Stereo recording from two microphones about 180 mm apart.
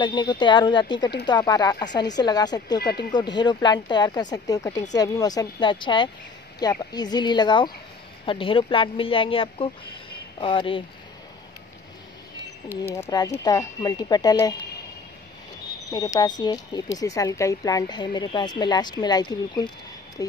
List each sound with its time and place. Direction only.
0.0 s speech: 25° left (ahead or behind)
12.8 s speech: 15° left (ahead or behind)
15.9 s speech: 20° left (ahead or behind)